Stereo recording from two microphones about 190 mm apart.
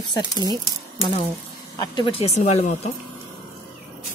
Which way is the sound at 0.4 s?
20° right (ahead or behind).